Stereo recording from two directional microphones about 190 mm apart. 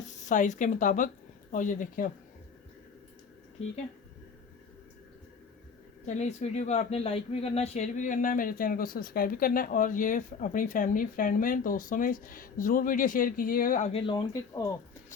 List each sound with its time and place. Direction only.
0.3 s speech: 40° left (ahead or behind)
6.1 s speech: 35° left (ahead or behind)
13.9 s speech: 25° left (ahead or behind)